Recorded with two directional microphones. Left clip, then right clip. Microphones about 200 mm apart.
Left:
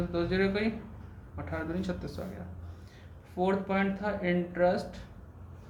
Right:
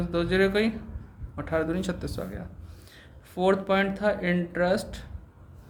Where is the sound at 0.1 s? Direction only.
55° right (ahead or behind).